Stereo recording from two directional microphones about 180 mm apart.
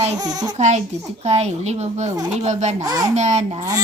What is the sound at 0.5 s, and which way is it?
Speech, 40° right (ahead or behind).